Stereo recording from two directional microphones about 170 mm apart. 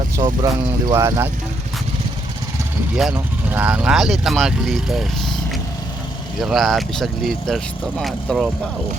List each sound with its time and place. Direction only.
0.2 s speech: 25° right (ahead or behind)
2.9 s speech: 5° right (ahead or behind)
6.4 s speech: centre (ahead or behind)